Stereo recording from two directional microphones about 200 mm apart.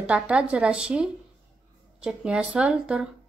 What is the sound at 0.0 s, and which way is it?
Speech, 5° right (ahead or behind).